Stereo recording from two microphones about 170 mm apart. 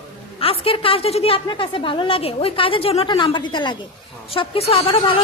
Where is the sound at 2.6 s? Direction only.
35° left (ahead or behind).